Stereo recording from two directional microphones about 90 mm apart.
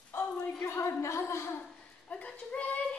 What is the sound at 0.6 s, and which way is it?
A woman's voice, 30° left (ahead or behind).